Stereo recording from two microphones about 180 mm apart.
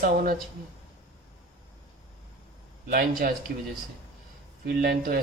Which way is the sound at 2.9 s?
55° right (ahead or behind).